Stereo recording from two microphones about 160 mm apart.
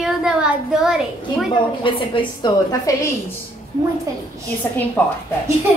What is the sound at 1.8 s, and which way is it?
A woman's voice, 30° left (ahead or behind).